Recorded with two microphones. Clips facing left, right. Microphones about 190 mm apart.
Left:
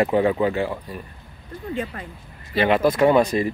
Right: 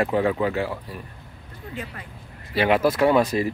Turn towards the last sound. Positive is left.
turn(degrees=-5)  # may be behind; listen again after turning